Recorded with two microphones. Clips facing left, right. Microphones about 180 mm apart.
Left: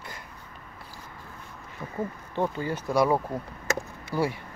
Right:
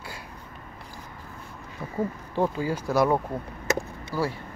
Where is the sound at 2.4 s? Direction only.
10° right (ahead or behind).